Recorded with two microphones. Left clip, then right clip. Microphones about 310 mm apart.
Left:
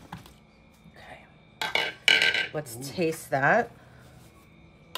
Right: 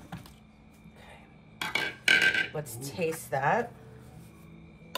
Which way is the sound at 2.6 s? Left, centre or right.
Left.